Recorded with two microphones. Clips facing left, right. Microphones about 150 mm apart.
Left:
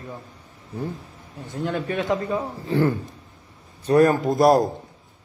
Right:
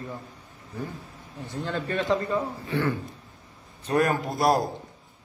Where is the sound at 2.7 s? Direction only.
35° left (ahead or behind).